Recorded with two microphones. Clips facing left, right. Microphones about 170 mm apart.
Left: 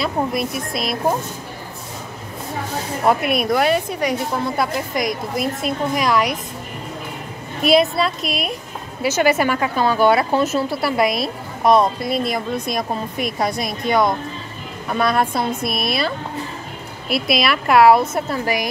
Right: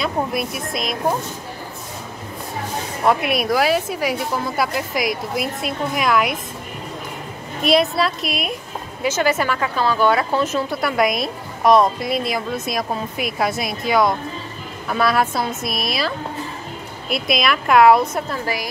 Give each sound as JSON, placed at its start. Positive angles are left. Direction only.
{"t": 0.0, "sound": "a woman's voice", "side_deg": 0}
{"t": 3.1, "sound": "a woman's voice", "side_deg": 0}
{"t": 7.6, "sound": "a woman's voice", "side_deg": 0}
{"t": 9.0, "sound": "speech", "side_deg": 10}
{"t": 10.7, "sound": "a woman's voice", "side_deg": 30}
{"t": 11.0, "sound": "a woman's voice", "side_deg": 0}
{"t": 17.1, "sound": "a woman's voice", "side_deg": 5}
{"t": 18.4, "sound": "speech", "side_deg": 15}